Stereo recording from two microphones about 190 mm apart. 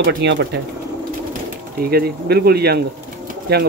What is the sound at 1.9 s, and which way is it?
Speech, 55° right (ahead or behind).